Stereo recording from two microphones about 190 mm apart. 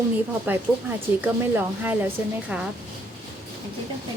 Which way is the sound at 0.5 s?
10° right (ahead or behind).